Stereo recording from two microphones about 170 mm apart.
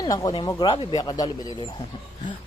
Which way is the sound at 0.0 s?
20° left (ahead or behind).